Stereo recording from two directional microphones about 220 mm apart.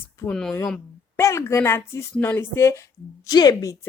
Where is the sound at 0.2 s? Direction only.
5° left (ahead or behind).